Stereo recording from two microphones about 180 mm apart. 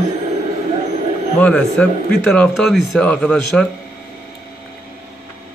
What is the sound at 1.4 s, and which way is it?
Speech, 5° left (ahead or behind).